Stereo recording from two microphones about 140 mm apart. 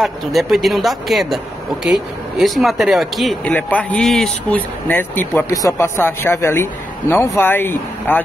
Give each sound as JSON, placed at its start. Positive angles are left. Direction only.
{"t": 0.0, "sound": "speech", "side_deg": 0}
{"t": 3.4, "sound": "speech", "side_deg": 10}